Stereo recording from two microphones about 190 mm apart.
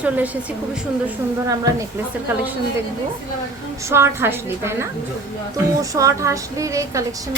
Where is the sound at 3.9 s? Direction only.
15° right (ahead or behind).